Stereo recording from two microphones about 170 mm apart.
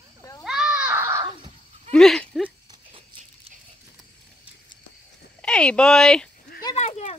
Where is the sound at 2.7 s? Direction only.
35° right (ahead or behind).